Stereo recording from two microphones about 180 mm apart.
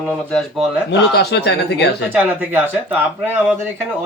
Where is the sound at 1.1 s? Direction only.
65° left (ahead or behind).